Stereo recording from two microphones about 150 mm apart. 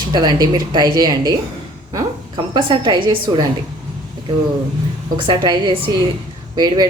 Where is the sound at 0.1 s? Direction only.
30° right (ahead or behind).